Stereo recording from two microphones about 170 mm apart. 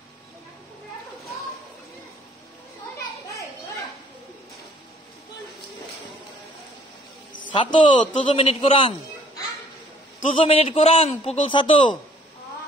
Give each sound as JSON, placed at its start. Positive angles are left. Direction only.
{"t": 7.4, "sound": "a man's voice", "side_deg": 30}
{"t": 8.0, "sound": "a man's voice", "side_deg": 40}
{"t": 10.4, "sound": "a man's voice", "side_deg": 35}